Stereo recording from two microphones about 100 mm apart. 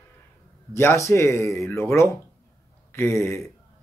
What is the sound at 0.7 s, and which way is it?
Speech, 25° left (ahead or behind).